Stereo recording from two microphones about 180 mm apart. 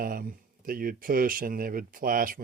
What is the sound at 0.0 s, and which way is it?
Speech, 55° right (ahead or behind).